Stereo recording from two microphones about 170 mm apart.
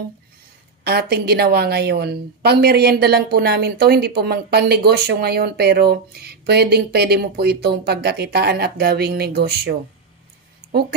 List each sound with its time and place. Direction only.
0.8 s a woman's voice: 70° right (ahead or behind)